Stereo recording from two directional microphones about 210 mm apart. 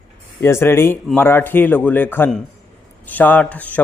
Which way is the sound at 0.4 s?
10° left (ahead or behind).